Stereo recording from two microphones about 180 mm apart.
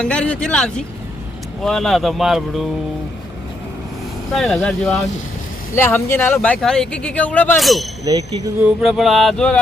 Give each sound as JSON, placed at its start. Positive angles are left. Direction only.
{"t": 0.0, "sound": "speech", "side_deg": 5}
{"t": 4.4, "sound": "speech", "side_deg": 5}
{"t": 5.7, "sound": "speech", "side_deg": 15}
{"t": 8.0, "sound": "speech", "side_deg": -20}
{"t": 8.6, "sound": "speech", "side_deg": 0}